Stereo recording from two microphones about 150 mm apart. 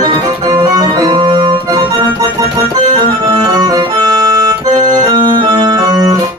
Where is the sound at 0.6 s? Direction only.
25° right (ahead or behind).